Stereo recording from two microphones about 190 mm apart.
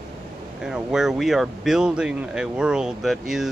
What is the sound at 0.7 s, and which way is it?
Speech, centre (ahead or behind).